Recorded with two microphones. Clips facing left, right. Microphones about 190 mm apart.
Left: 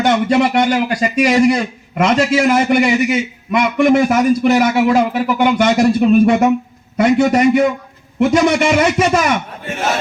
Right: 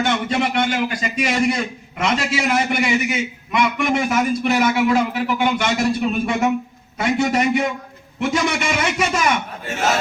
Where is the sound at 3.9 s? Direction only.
50° left (ahead or behind).